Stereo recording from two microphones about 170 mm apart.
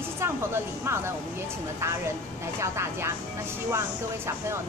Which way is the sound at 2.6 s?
15° right (ahead or behind).